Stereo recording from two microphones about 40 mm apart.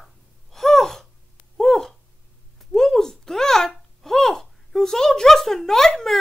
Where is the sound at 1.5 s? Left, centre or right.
Centre.